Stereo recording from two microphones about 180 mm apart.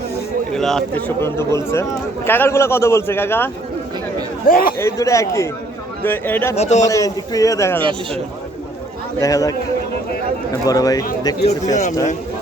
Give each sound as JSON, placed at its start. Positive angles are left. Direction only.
{"t": 0.5, "sound": "speech", "side_deg": 0}
{"t": 4.4, "sound": "a man's voice", "side_deg": 50}
{"t": 4.8, "sound": "speech", "side_deg": 15}
{"t": 6.6, "sound": "a man's voice", "side_deg": 40}
{"t": 6.8, "sound": "speech", "side_deg": 20}
{"t": 9.2, "sound": "a man's voice", "side_deg": 20}
{"t": 10.7, "sound": "a man's voice", "side_deg": 20}
{"t": 11.7, "sound": "a man's voice", "side_deg": 45}